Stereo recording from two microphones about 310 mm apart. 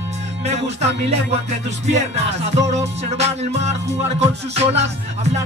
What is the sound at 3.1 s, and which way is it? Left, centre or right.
Music, right.